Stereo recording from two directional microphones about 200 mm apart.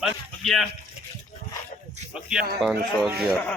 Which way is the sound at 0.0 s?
Centre (ahead or behind).